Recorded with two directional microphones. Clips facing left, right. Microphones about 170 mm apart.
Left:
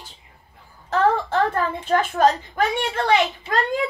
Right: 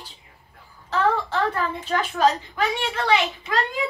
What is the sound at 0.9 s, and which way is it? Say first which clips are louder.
A child's voice: left 3 dB; 50° left (ahead or behind).